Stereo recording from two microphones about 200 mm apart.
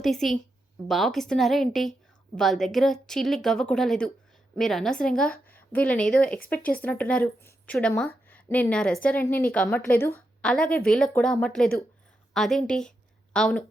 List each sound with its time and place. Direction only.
0.0 s a woman's voice: centre (ahead or behind)
5.3 s a sound: 45° left (ahead or behind)
5.7 s a woman's voice: 5° left (ahead or behind)